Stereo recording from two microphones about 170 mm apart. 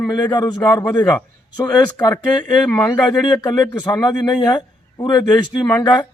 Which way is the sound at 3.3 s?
25° left (ahead or behind).